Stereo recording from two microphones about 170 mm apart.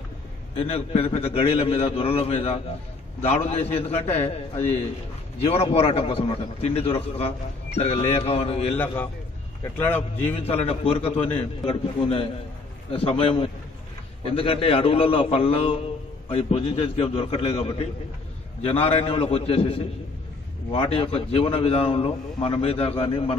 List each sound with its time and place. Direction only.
0.6 s a man's voice: 35° left (ahead or behind)
8.7 s a man's voice: 10° left (ahead or behind)
10.4 s a man's voice: 35° left (ahead or behind)